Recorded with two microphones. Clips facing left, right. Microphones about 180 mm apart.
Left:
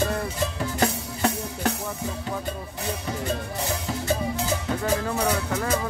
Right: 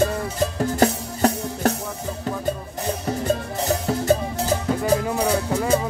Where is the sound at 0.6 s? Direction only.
40° right (ahead or behind).